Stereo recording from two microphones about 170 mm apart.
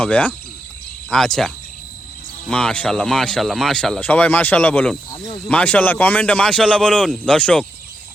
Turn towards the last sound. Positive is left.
turn(degrees=5)  # may be behind; listen again after turning